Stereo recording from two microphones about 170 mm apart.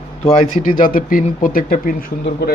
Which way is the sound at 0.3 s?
50° left (ahead or behind).